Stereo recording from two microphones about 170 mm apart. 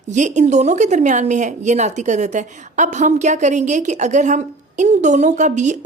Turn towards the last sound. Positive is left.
turn(degrees=-45)  # may be behind; listen again after turning